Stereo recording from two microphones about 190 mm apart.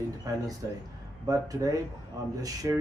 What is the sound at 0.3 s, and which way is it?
Speech, 20° right (ahead or behind).